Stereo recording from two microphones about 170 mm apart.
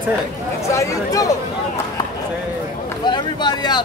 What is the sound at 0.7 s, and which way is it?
Speech, 20° left (ahead or behind).